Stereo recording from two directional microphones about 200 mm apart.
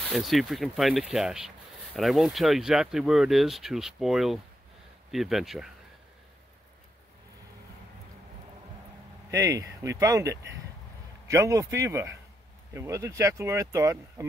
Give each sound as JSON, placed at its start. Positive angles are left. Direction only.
{"t": 0.0, "sound": "speech", "side_deg": 0}
{"t": 9.3, "sound": "speech", "side_deg": -15}